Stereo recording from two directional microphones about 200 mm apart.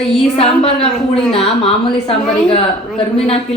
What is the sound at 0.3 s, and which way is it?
A woman's voice, 30° left (ahead or behind).